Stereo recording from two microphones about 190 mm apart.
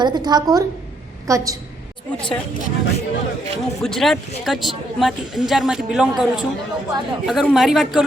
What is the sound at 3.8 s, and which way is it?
Speech, centre (ahead or behind).